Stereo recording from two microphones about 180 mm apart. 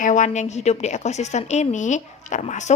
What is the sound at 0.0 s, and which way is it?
A woman's voice, 45° left (ahead or behind).